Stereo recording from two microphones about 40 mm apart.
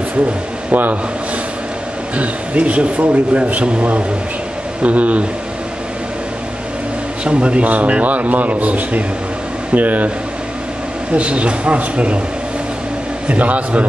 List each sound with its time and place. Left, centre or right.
0.7 s speech: right
2.1 s speech: right
4.8 s speech: right
7.2 s a man's voice: right
11.1 s speech: right
13.3 s speech: right